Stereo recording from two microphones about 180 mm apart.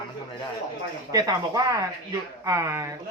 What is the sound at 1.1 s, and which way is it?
Speech, 20° right (ahead or behind).